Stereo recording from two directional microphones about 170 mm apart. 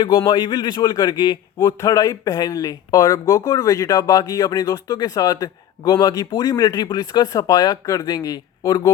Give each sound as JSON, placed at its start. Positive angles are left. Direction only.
{"t": 0.3, "sound": "a man's voice", "side_deg": 25}